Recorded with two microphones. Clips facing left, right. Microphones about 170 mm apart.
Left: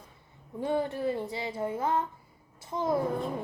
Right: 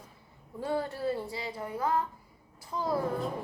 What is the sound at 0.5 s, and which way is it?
A child's voice, 20° left (ahead or behind).